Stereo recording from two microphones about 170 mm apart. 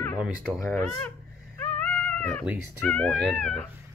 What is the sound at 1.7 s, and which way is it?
Cat, 5° left (ahead or behind).